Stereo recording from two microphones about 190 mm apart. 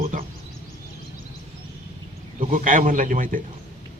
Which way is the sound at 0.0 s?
45° right (ahead or behind).